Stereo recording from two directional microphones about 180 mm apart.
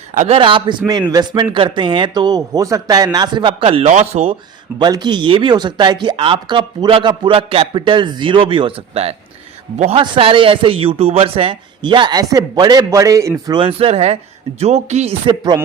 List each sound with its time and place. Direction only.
0.1 s a man's voice: 45° right (ahead or behind)
0.3 s speech: 30° right (ahead or behind)
4.8 s speech: 25° right (ahead or behind)
13.6 s speech: 30° right (ahead or behind)